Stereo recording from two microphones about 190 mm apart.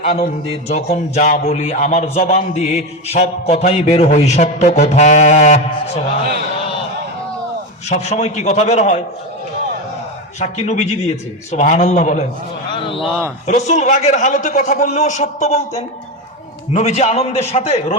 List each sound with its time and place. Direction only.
0.0 s speech: 35° left (ahead or behind)
7.9 s speech: 35° left (ahead or behind)
10.4 s speech: 35° left (ahead or behind)
12.7 s a sound: 25° left (ahead or behind)
13.5 s speech: 40° left (ahead or behind)
16.7 s speech: 35° left (ahead or behind)